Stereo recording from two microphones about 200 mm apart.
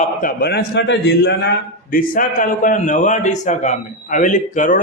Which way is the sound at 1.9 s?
45° left (ahead or behind).